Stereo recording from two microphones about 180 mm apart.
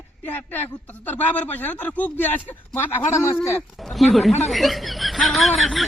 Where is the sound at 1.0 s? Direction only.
10° left (ahead or behind).